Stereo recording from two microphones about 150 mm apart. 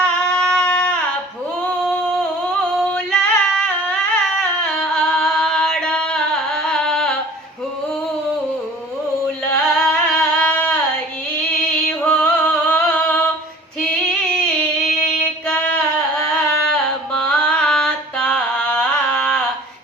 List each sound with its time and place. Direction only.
0.0 s a sound: 5° left (ahead or behind)
2.2 s singing: 5° left (ahead or behind)
9.5 s music: 5° left (ahead or behind)
13.8 s female singing: 5° left (ahead or behind)